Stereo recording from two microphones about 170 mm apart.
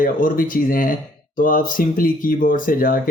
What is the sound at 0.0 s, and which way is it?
Speech, 55° left (ahead or behind).